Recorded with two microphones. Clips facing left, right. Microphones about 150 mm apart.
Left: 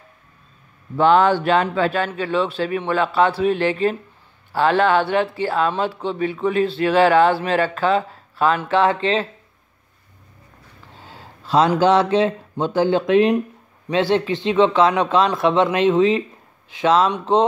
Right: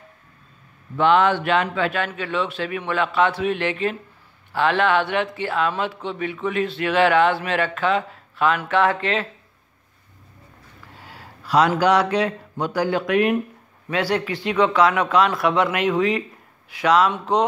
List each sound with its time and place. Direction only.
0.9 s speech: 35° left (ahead or behind)
11.0 s speech: 25° left (ahead or behind)